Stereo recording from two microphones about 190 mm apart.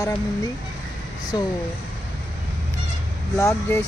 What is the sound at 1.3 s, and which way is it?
Speech, 25° left (ahead or behind).